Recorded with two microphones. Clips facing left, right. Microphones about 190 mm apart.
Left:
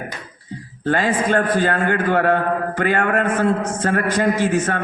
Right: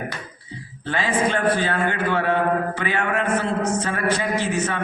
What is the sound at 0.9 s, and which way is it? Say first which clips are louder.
A man's voice: left 4 dB; 45° left (ahead or behind).